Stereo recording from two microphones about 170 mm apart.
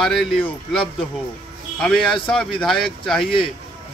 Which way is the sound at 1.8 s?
5° left (ahead or behind).